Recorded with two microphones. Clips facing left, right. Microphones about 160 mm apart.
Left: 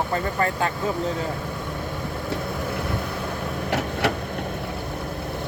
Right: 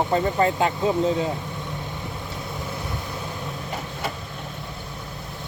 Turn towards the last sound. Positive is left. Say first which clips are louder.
# left 7 dB
turn(degrees=75)  # may be behind; listen again after turning